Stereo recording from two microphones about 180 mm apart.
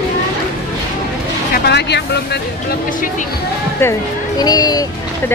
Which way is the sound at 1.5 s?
70° left (ahead or behind).